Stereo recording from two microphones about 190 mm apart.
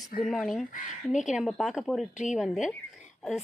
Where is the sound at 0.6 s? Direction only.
45° left (ahead or behind).